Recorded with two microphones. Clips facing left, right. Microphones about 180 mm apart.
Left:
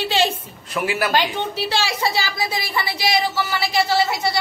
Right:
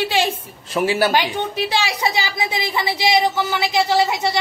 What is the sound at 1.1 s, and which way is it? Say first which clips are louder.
A woman's voice: right 1 dB; 15° right (ahead or behind).